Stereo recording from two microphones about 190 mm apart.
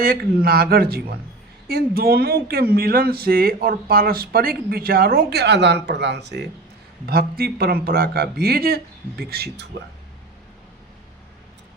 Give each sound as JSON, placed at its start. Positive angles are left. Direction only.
{"t": 0.0, "sound": "a man's voice", "side_deg": -55}